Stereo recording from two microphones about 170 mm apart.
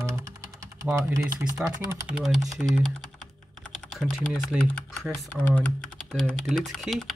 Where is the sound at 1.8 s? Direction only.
5° right (ahead or behind).